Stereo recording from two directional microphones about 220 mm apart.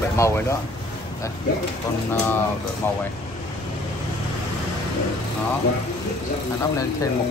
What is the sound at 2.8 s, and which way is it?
Speech, 10° left (ahead or behind).